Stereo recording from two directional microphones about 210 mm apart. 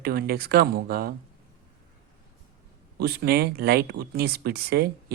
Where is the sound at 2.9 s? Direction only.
50° right (ahead or behind).